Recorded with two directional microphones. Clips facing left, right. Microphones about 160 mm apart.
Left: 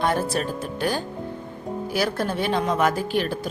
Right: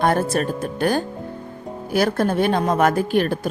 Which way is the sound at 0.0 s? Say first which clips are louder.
Right 4 dB; 50° right (ahead or behind).